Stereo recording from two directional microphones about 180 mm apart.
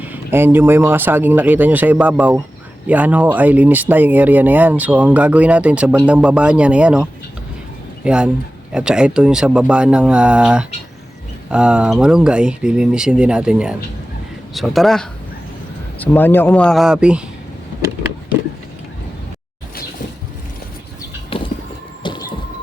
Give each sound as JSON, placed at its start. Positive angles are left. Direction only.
{"t": 0.0, "sound": "speech", "side_deg": -10}
{"t": 21.3, "sound": "a sound", "side_deg": 30}
{"t": 22.0, "sound": "music", "side_deg": 25}